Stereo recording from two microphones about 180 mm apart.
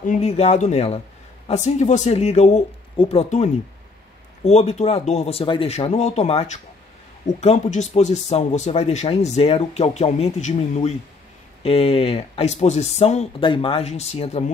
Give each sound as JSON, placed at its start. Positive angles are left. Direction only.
{"t": 0.0, "sound": "speech", "side_deg": 40}
{"t": 4.5, "sound": "speech", "side_deg": 40}